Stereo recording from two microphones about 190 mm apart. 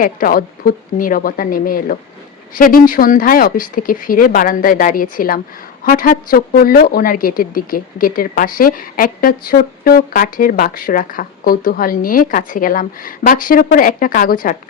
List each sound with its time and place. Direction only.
0.0 s a woman's voice: 45° left (ahead or behind)